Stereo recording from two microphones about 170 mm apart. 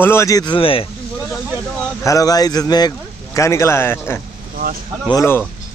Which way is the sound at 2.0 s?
20° left (ahead or behind).